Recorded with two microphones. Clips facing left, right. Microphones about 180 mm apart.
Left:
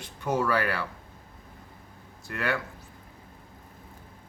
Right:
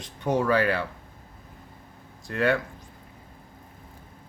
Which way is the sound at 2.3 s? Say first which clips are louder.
Right 6 dB; 30° right (ahead or behind).